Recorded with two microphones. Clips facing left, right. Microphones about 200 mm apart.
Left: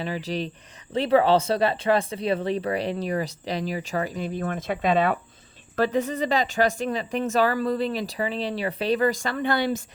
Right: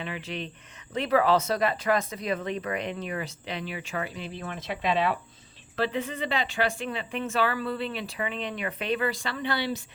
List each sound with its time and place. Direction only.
0.0 s speech: 35° left (ahead or behind)